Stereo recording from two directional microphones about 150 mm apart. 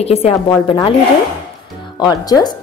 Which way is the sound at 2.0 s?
25° left (ahead or behind).